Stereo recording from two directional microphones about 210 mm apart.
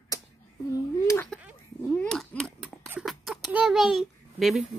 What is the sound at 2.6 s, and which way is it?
A child's voice, 5° right (ahead or behind).